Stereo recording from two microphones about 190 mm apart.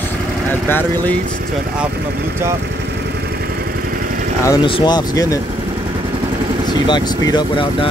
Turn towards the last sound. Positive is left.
turn(degrees=25)  # may be behind; listen again after turning